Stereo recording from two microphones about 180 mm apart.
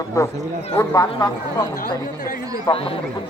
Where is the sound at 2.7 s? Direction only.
30° left (ahead or behind).